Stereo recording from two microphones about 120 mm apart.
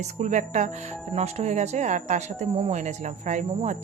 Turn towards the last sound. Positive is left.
turn(degrees=-90)